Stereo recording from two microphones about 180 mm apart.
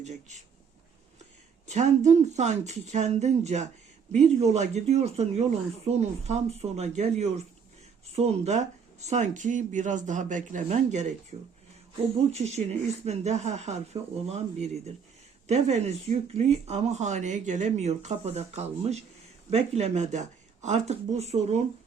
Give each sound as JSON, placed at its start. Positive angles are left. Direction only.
{"t": 0.0, "sound": "speech", "side_deg": -40}
{"t": 1.6, "sound": "speech", "side_deg": -40}